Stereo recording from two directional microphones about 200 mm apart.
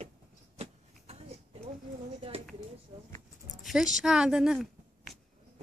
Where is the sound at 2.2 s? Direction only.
30° right (ahead or behind).